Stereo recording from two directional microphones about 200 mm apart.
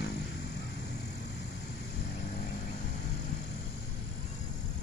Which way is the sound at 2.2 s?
45° left (ahead or behind).